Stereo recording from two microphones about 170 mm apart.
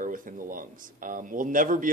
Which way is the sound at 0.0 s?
50° right (ahead or behind).